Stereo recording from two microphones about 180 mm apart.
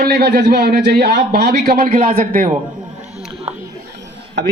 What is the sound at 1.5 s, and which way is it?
A man's voice, 50° right (ahead or behind).